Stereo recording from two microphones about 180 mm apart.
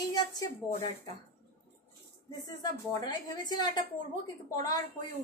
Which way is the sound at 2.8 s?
20° left (ahead or behind).